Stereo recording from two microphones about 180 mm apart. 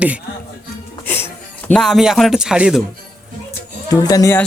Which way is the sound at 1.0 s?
10° left (ahead or behind).